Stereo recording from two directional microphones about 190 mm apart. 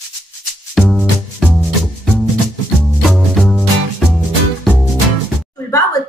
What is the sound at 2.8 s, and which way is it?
Music, centre (ahead or behind).